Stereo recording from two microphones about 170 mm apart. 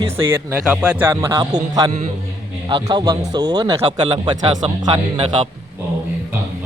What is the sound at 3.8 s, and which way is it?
Speech, 35° right (ahead or behind).